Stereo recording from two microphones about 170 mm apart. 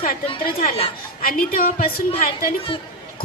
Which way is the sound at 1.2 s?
60° left (ahead or behind).